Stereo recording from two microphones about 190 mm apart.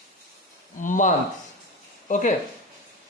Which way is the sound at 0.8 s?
40° left (ahead or behind).